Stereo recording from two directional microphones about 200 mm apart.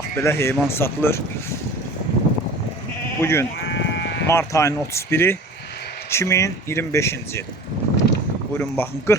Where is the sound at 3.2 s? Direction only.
10° left (ahead or behind).